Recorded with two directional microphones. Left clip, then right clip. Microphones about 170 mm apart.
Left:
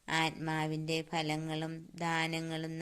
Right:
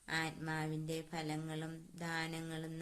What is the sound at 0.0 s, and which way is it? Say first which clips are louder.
Speech: left 7 dB; 30° left (ahead or behind).